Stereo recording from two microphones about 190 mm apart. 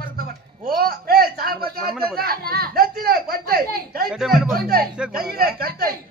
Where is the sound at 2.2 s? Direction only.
50° right (ahead or behind).